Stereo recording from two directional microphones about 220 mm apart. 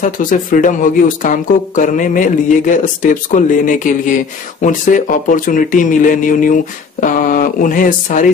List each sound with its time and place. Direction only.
0.0 s speech: 40° left (ahead or behind)